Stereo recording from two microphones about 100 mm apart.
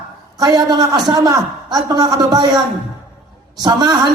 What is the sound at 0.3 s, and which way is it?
A man's voice, 40° right (ahead or behind).